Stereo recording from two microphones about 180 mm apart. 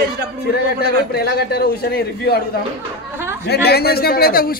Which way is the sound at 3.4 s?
65° left (ahead or behind).